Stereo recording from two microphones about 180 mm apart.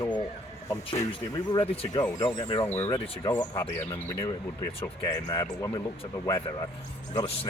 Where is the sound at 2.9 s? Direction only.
30° left (ahead or behind).